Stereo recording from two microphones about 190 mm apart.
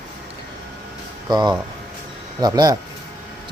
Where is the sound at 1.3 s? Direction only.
20° right (ahead or behind).